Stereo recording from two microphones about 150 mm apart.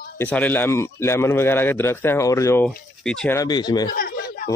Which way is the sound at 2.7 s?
5° left (ahead or behind).